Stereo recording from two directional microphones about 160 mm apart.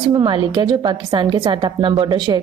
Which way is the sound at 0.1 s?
30° right (ahead or behind).